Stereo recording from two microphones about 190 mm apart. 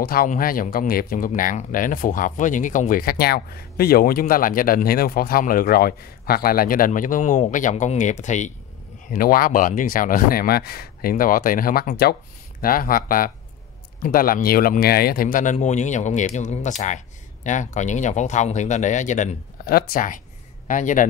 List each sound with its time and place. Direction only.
0.0 s speech: 50° left (ahead or behind)